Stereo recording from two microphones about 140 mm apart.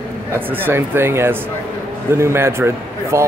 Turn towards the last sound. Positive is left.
turn(degrees=-20)  # may be behind; listen again after turning